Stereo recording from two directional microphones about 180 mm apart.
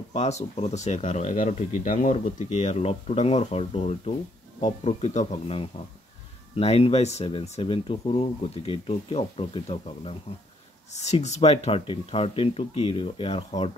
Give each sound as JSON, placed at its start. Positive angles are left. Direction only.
{"t": 0.1, "sound": "speech", "side_deg": 40}